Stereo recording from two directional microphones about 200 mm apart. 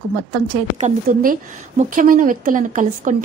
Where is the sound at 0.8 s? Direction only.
35° right (ahead or behind).